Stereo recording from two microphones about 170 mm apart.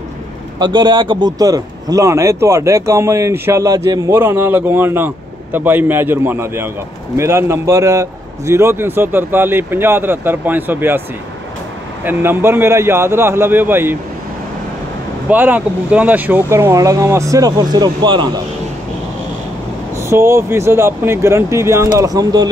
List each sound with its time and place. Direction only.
0.6 s a man's voice: 25° right (ahead or behind); by 11.0 s 10° right (ahead or behind)
12.0 s a man's voice: 10° right (ahead or behind)
15.2 s a man's voice: 10° right (ahead or behind); by 18.4 s 25° right (ahead or behind)
20.0 s a man's voice: 15° right (ahead or behind)